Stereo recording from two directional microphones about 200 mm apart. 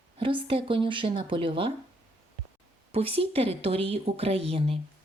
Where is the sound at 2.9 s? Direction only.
30° right (ahead or behind).